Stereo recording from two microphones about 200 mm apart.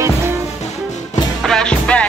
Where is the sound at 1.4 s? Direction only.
5° left (ahead or behind).